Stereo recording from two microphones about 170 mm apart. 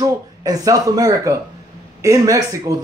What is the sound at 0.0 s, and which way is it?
A man's voice, 20° right (ahead or behind).